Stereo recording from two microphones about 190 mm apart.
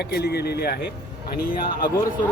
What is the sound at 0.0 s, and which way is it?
Speech, 60° left (ahead or behind).